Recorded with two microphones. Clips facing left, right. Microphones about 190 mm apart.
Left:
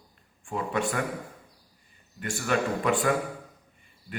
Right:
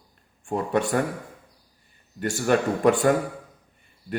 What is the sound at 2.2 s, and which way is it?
Speech, 40° right (ahead or behind).